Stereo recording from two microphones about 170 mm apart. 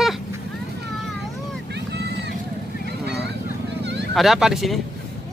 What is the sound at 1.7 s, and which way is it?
Vehicle, 80° right.